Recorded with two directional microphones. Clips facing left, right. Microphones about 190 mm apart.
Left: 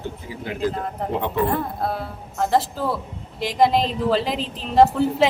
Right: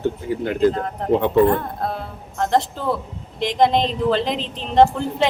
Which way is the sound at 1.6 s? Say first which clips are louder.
Left 1 dB; 5° left (ahead or behind).